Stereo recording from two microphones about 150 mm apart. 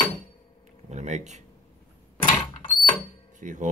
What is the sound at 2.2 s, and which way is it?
Mechanisms, 35° left (ahead or behind).